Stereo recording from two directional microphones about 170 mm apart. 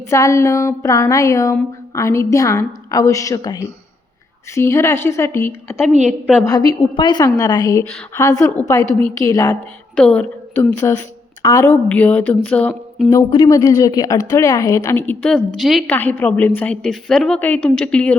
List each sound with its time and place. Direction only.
0.1 s a woman's voice: 15° left (ahead or behind)
6.7 s a woman's voice: 25° left (ahead or behind)
9.9 s a woman's voice: 5° left (ahead or behind)
13.1 s a woman's voice: 20° left (ahead or behind)